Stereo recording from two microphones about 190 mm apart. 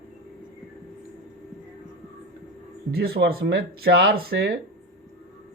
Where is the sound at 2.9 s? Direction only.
55° right (ahead or behind).